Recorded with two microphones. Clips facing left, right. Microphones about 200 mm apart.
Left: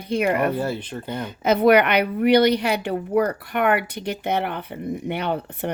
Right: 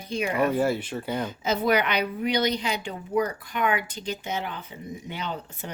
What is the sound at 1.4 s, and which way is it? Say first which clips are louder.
A woman's voice: left 9 dB; 60° left (ahead or behind).